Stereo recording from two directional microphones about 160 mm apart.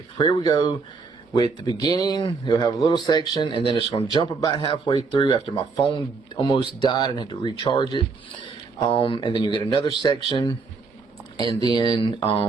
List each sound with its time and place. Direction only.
0.2 s speech: 25° left (ahead or behind)